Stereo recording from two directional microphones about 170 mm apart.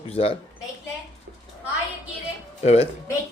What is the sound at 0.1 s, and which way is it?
Speech, 35° left (ahead or behind).